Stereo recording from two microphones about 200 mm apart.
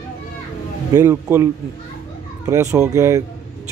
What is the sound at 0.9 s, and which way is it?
Speech, 15° right (ahead or behind).